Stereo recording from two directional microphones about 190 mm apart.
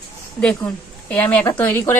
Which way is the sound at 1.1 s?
10° left (ahead or behind).